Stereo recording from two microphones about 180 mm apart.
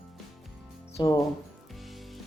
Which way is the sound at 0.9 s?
20° left (ahead or behind).